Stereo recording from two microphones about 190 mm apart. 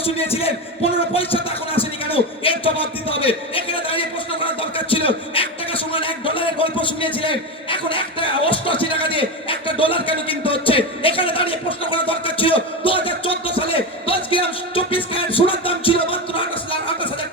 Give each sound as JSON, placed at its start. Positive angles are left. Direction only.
{"t": 0.0, "sound": "music", "side_deg": 30}
{"t": 7.2, "sound": "speech", "side_deg": 25}